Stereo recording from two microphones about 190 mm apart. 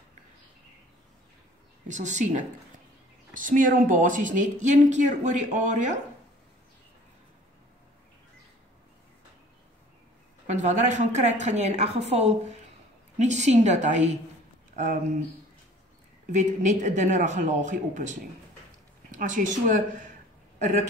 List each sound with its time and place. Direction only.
1.9 s speech: 40° right (ahead or behind)
10.4 s speech: 40° right (ahead or behind)
16.3 s speech: 40° right (ahead or behind)